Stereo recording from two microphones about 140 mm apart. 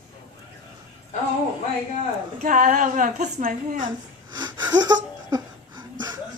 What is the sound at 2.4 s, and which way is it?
A woman's voice, 70° right (ahead or behind).